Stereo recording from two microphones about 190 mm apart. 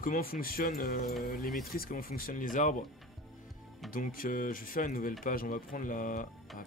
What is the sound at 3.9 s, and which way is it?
Speech, 45° left (ahead or behind).